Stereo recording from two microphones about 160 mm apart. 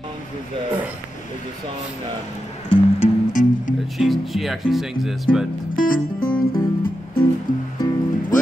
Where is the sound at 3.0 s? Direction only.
55° left (ahead or behind).